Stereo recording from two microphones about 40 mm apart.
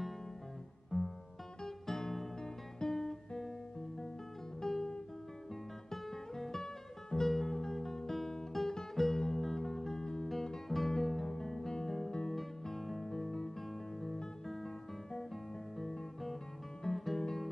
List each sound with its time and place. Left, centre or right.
0.9 s music: centre
1.6 s guitar: centre
4.6 s guitar: centre
6.6 s music: centre
15.8 s guitar: centre